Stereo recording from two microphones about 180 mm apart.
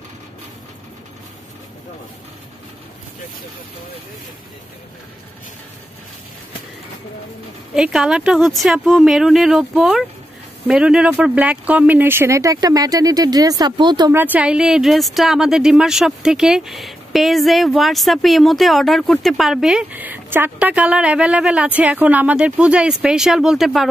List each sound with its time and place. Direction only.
7.7 s speech: 5° right (ahead or behind); by 14.1 s 25° right (ahead or behind)
14.1 s speech: 10° right (ahead or behind)